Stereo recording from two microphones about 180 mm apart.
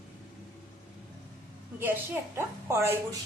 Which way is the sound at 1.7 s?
10° right (ahead or behind).